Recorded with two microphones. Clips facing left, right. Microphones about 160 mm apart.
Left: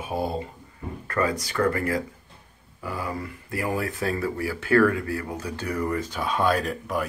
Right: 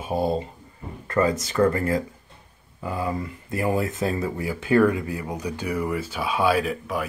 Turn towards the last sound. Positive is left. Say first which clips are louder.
# right 2 dB
turn(degrees=0)  # may be behind; listen again after turning